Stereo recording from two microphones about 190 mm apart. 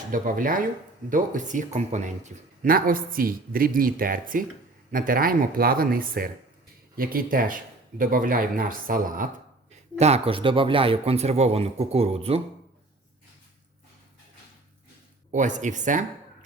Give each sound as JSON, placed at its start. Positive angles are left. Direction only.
{"t": 0.1, "sound": "speech", "side_deg": -45}
{"t": 10.0, "sound": "speech", "side_deg": -30}
{"t": 15.3, "sound": "speech", "side_deg": -40}